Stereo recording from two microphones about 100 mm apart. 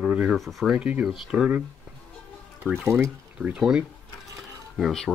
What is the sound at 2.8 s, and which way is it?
Speech, 25° right (ahead or behind).